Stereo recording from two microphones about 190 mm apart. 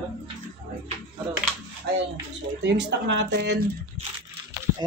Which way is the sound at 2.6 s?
65° right (ahead or behind).